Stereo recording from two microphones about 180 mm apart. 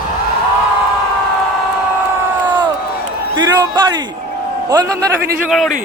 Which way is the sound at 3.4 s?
20° right (ahead or behind).